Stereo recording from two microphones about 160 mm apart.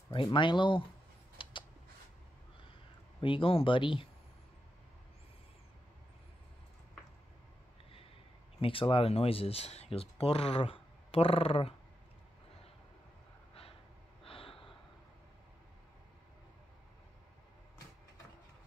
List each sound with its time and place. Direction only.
0.1 s speech: 30° left (ahead or behind)
1.4 s a sound: 30° left (ahead or behind)
3.2 s speech: 30° left (ahead or behind)
8.5 s speech: 35° left (ahead or behind)
14.2 s gasp: 35° left (ahead or behind)